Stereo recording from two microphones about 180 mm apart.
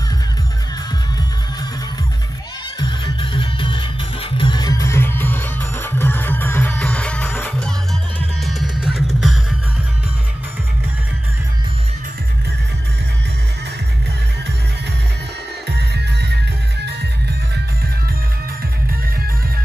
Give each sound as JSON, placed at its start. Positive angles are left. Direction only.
{"t": 2.8, "sound": "music", "side_deg": 30}
{"t": 15.9, "sound": "music", "side_deg": -70}